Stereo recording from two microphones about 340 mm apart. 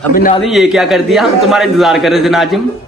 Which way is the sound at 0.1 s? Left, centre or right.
Left.